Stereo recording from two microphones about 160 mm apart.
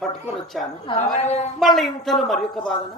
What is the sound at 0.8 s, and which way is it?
Speech, 40° left (ahead or behind).